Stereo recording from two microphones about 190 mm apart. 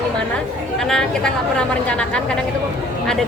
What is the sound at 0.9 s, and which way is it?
A woman's voice, 5° left (ahead or behind).